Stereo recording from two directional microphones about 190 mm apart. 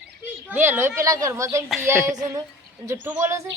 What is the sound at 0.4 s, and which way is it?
A woman's voice, 10° right (ahead or behind).